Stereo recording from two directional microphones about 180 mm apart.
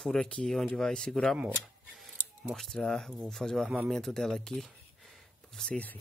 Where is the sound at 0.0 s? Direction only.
5° left (ahead or behind).